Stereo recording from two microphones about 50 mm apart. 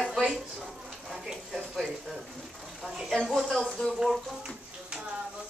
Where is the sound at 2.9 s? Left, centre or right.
Centre.